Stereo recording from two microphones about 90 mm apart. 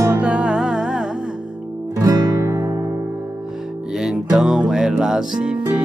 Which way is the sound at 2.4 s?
35° right (ahead or behind).